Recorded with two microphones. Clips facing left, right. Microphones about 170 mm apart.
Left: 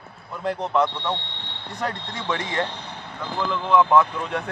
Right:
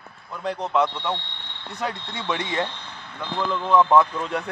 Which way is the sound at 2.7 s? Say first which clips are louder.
Left 4 dB; 35° left (ahead or behind).